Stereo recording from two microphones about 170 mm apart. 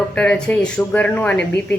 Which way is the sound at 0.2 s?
5° left (ahead or behind).